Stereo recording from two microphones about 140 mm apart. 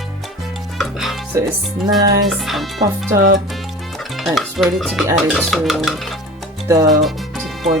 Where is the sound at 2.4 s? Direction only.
Centre (ahead or behind).